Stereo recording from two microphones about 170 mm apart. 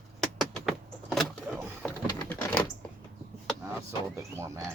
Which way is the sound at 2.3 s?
10° left (ahead or behind).